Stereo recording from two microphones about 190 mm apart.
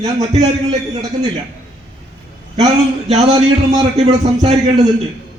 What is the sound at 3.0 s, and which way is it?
Speech, 35° right (ahead or behind).